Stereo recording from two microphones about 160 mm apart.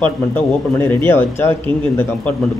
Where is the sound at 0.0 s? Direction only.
10° left (ahead or behind).